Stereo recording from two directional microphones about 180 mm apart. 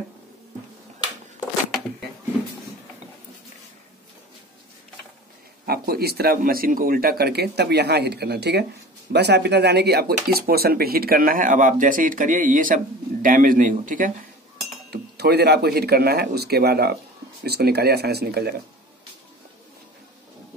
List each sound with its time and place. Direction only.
5.7 s speech: 60° right (ahead or behind)
14.9 s speech: 65° right (ahead or behind)